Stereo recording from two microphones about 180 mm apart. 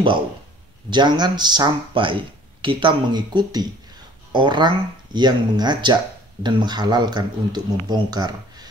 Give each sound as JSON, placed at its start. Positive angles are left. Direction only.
{"t": 0.8, "sound": "speech", "side_deg": -25}